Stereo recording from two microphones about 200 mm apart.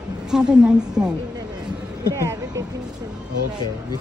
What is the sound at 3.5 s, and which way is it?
Speech, 20° right (ahead or behind).